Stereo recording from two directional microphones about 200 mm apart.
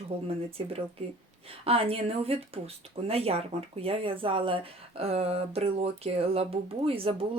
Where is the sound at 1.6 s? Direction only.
30° right (ahead or behind).